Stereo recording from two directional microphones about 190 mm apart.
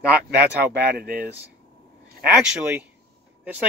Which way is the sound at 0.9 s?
50° right (ahead or behind).